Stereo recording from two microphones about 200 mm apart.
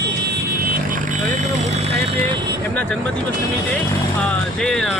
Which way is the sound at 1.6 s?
35° right (ahead or behind).